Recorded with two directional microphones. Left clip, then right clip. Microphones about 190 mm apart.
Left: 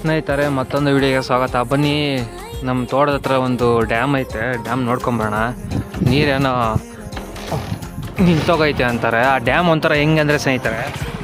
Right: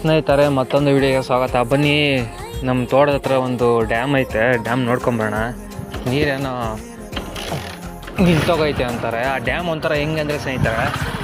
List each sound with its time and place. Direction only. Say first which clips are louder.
0.0 s speech: right 3 dB; 5° left (ahead or behind)
0.9 s speech: even; 15° left (ahead or behind)
1.7 s speech: right 2 dB; 5° left (ahead or behind); by 4.1 s 20° left (ahead or behind)
4.1 s speech: right 4 dB; centre (ahead or behind)
6.1 s speech: left 4 dB; 20° left (ahead or behind)
8.4 s speech: left 2 dB; 25° left (ahead or behind)